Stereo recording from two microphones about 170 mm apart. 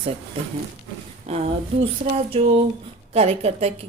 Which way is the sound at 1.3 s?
35° right (ahead or behind).